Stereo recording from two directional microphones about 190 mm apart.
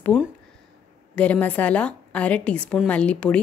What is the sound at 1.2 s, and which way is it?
A woman's voice, 10° left (ahead or behind).